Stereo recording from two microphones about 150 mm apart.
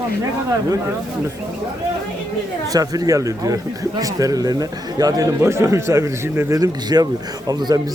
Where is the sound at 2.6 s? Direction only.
25° right (ahead or behind).